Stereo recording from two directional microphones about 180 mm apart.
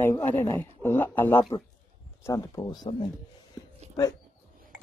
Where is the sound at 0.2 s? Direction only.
10° left (ahead or behind).